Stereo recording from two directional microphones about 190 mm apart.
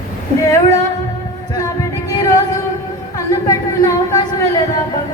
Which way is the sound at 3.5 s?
15° left (ahead or behind).